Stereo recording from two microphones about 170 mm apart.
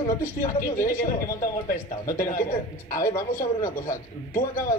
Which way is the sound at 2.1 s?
55° left (ahead or behind).